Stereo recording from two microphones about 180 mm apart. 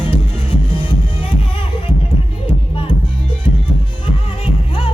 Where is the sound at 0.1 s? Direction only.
30° left (ahead or behind).